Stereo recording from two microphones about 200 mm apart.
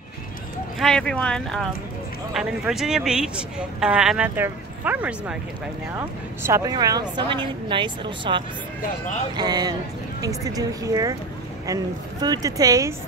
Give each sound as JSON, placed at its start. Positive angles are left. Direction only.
{"t": 0.7, "sound": "speech", "side_deg": 5}
{"t": 6.4, "sound": "speech", "side_deg": -15}